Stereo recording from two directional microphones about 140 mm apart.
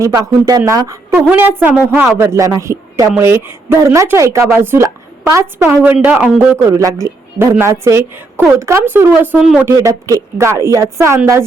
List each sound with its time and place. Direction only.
0.0 s speech: 25° right (ahead or behind)
1.1 s speech: 15° right (ahead or behind)
9.4 s speech: 5° right (ahead or behind)
9.7 s speech: 20° right (ahead or behind)